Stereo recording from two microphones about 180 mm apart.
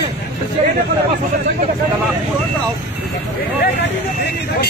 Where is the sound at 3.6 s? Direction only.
70° left (ahead or behind).